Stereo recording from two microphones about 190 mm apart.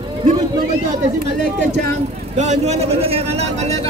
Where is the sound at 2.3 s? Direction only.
35° right (ahead or behind).